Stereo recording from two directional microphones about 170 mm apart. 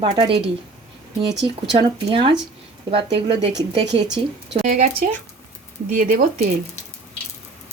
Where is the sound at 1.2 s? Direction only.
90° right.